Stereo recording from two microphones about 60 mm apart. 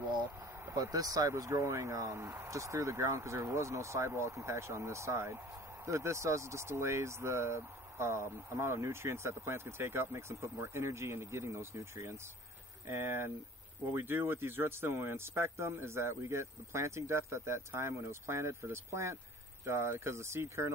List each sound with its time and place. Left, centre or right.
0.7 s speech: right
1.5 s speech: right